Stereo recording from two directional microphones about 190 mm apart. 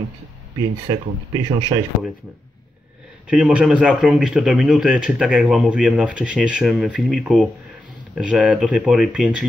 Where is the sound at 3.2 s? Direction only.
5° right (ahead or behind).